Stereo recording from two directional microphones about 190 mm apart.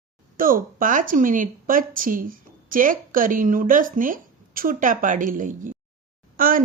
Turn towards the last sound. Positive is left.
turn(degrees=-50)  # may be behind; listen again after turning